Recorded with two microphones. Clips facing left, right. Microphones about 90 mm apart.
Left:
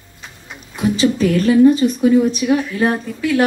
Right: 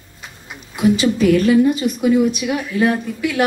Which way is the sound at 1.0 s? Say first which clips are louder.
Left 3 dB; 35° left (ahead or behind).